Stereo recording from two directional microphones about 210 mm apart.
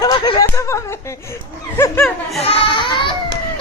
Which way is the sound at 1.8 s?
5° left (ahead or behind).